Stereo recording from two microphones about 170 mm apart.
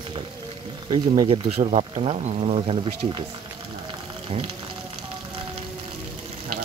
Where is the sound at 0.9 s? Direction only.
30° right (ahead or behind).